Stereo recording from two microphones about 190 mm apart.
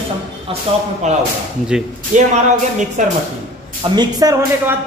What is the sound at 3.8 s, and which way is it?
Speech, 25° right (ahead or behind).